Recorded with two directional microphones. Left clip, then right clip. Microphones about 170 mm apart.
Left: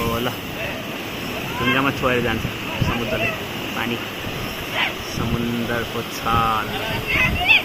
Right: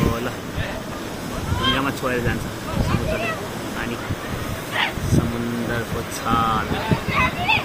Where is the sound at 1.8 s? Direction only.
20° left (ahead or behind).